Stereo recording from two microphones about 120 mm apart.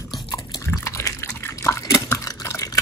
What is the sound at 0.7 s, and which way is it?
Liquid, 25° left (ahead or behind).